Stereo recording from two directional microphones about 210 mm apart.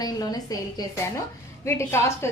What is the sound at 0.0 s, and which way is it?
Speech, 20° left (ahead or behind).